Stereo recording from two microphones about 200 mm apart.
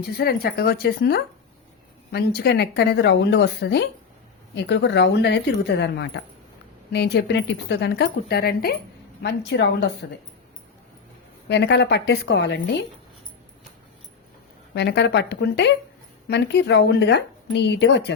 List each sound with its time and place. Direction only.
0.0 s speech: 50° left (ahead or behind)
9.2 s speech: 60° left (ahead or behind)
11.4 s speech: 60° left (ahead or behind)
14.8 s speech: 60° left (ahead or behind)